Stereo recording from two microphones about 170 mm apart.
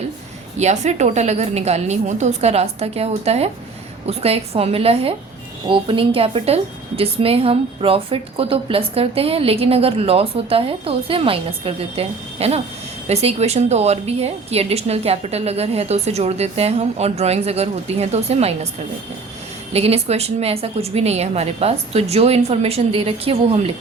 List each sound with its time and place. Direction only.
0.5 s a woman's voice: 40° right (ahead or behind)
19.7 s a woman's voice: 35° right (ahead or behind)